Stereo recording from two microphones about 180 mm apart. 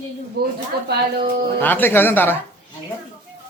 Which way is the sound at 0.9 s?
65° right (ahead or behind).